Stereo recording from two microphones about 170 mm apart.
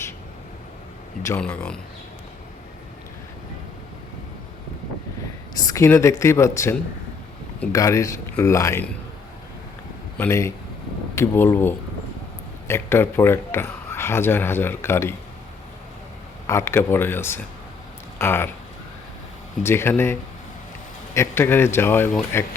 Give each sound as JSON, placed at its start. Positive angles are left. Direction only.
{"t": 1.4, "sound": "speech", "side_deg": 5}
{"t": 5.5, "sound": "speech", "side_deg": 20}
{"t": 10.2, "sound": "speech", "side_deg": 15}
{"t": 16.5, "sound": "speech", "side_deg": 15}
{"t": 19.6, "sound": "speech", "side_deg": 15}